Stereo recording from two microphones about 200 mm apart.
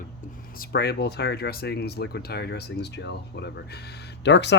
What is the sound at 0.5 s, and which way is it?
Speech, 55° left (ahead or behind).